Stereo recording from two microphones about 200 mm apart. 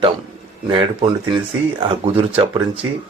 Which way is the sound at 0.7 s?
25° right (ahead or behind).